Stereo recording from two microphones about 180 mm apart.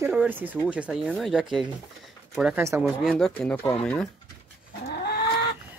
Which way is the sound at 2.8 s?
Centre (ahead or behind).